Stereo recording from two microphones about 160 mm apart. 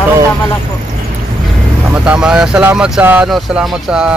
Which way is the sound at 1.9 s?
5° right (ahead or behind).